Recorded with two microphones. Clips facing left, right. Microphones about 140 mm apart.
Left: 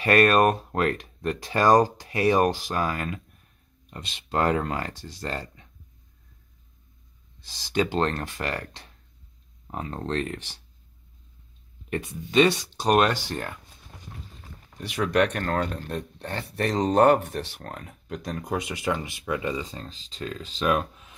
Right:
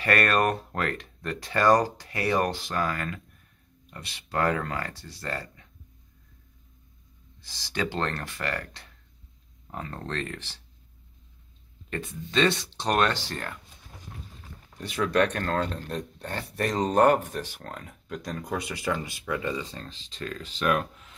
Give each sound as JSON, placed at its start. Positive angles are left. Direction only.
{"t": 0.0, "sound": "speech", "side_deg": 20}
{"t": 7.4, "sound": "speech", "side_deg": 15}
{"t": 11.9, "sound": "speech", "side_deg": 15}
{"t": 14.8, "sound": "speech", "side_deg": 15}
{"t": 15.4, "sound": "speech", "side_deg": 50}
{"t": 16.5, "sound": "speech", "side_deg": 25}